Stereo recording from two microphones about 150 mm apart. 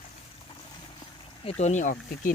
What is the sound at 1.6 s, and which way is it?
Speech, 55° left (ahead or behind).